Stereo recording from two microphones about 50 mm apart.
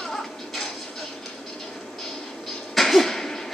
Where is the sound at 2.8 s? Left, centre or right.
Centre.